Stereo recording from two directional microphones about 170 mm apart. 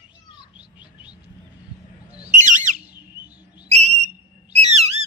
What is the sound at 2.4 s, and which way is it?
Bird, 45° right (ahead or behind).